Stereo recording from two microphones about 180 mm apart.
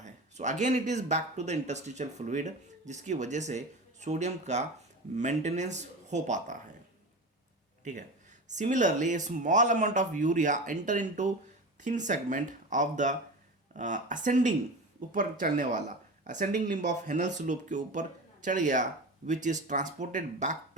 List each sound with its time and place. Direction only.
0.0 s speech: 40° right (ahead or behind)
8.4 s speech: 45° right (ahead or behind)